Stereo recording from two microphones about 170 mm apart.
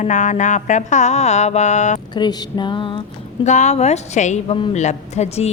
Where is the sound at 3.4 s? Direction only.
45° left (ahead or behind).